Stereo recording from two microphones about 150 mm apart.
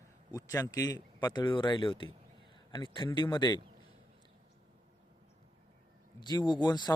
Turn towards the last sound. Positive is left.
turn(degrees=30)  # may be behind; listen again after turning